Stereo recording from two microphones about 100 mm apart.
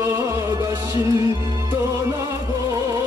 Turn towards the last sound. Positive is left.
turn(degrees=-35)  # may be behind; listen again after turning